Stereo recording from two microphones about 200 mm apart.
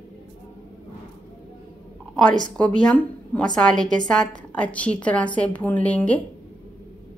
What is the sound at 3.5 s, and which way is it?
A woman's voice, 5° left (ahead or behind).